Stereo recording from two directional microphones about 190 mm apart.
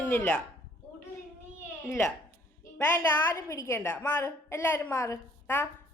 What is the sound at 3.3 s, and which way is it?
A woman's voice, 15° left (ahead or behind).